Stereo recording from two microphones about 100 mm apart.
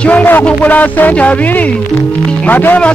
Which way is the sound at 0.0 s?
15° left (ahead or behind).